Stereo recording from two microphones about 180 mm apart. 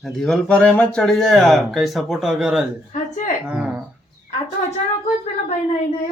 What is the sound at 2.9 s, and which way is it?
Speech, 40° left (ahead or behind).